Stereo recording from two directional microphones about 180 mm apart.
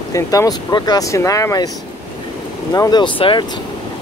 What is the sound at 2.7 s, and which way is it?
Speech, 20° left (ahead or behind).